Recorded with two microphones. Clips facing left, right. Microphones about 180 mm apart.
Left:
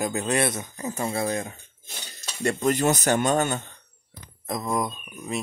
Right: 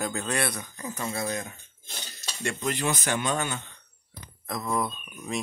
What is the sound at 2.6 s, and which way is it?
Speech, 45° left (ahead or behind).